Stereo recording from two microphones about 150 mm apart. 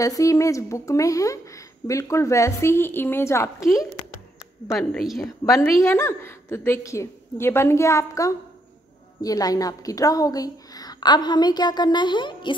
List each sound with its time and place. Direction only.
0.0 s a woman's voice: 20° left (ahead or behind)
4.7 s a woman's voice: centre (ahead or behind)
5.4 s a woman's voice: 20° left (ahead or behind)